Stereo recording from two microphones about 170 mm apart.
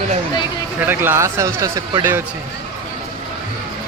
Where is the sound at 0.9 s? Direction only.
15° right (ahead or behind).